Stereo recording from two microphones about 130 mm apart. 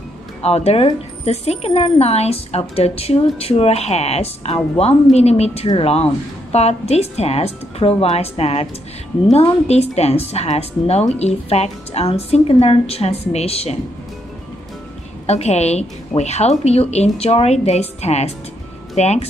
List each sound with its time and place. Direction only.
0.4 s speech: 50° left (ahead or behind)
15.2 s a woman's voice: 55° left (ahead or behind)